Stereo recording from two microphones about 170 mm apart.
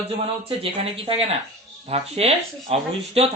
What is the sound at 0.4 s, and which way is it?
Speech, 35° right (ahead or behind).